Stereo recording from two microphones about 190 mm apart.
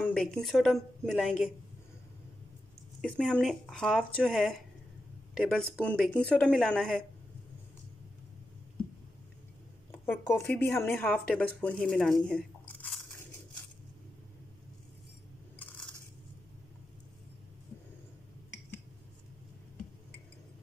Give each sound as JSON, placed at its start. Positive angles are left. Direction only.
{"t": 0.0, "sound": "a woman's voice", "side_deg": 5}
{"t": 3.0, "sound": "speech", "side_deg": 5}
{"t": 9.8, "sound": "speech", "side_deg": 10}